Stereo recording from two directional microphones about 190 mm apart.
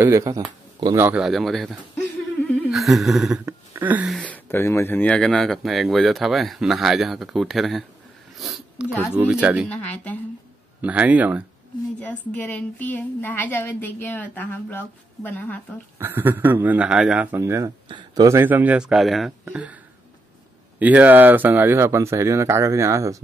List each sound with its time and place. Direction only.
0.0 s speech: 15° right (ahead or behind)
1.0 s speech: 5° right (ahead or behind)
2.4 s a sound: centre (ahead or behind)
4.2 s speech: 10° left (ahead or behind)
9.7 s a woman's voice: 10° left (ahead or behind)
10.8 s speech: 10° right (ahead or behind)
12.0 s a woman's voice: 10° left (ahead or behind)
16.0 s speech: 10° right (ahead or behind)
20.8 s speech: 10° right (ahead or behind)